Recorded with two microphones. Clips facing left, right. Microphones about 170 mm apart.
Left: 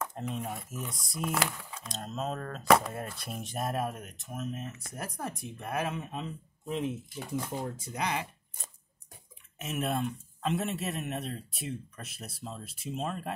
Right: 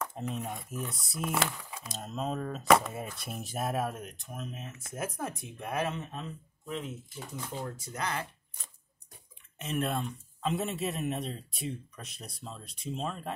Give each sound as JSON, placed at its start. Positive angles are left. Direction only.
{"t": 0.0, "sound": "a man's voice", "side_deg": 0}
{"t": 7.6, "sound": "speech", "side_deg": 20}
{"t": 9.6, "sound": "a man's voice", "side_deg": 5}